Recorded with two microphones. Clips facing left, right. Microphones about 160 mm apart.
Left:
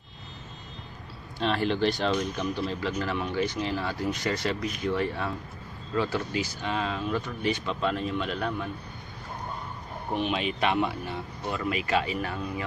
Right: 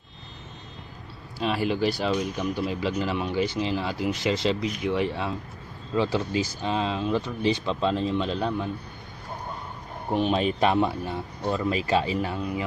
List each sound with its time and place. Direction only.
1.4 s speech: 5° right (ahead or behind)
10.1 s speech: 40° right (ahead or behind); by 12.6 s 20° right (ahead or behind)